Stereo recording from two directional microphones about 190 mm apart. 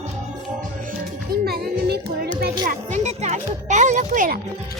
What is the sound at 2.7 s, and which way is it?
Music, 40° right (ahead or behind).